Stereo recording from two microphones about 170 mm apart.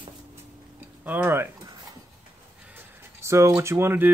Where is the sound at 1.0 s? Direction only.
10° right (ahead or behind).